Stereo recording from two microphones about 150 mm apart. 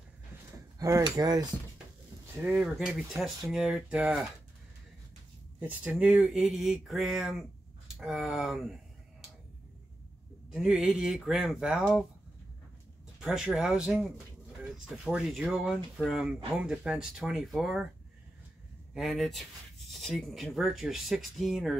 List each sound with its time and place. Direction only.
0.7 s speech: 20° right (ahead or behind)
2.3 s speech: 5° right (ahead or behind)
5.6 s speech: 10° right (ahead or behind)
10.5 s speech: 5° right (ahead or behind)
13.2 s speech: 5° right (ahead or behind)
18.9 s speech: centre (ahead or behind)